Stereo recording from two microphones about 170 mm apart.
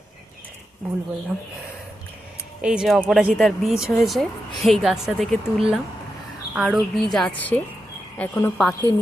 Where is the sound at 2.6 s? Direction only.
5° right (ahead or behind).